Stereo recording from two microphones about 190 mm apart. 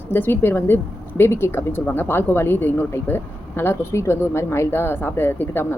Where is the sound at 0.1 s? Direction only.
10° left (ahead or behind).